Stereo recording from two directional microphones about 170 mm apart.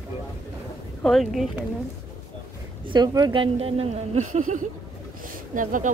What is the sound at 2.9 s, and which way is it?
A woman's voice, 25° right (ahead or behind).